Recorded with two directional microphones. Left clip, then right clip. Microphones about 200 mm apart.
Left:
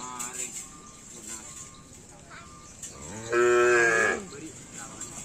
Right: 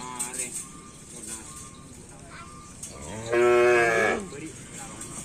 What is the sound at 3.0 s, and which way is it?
Livestock, 55° left (ahead or behind).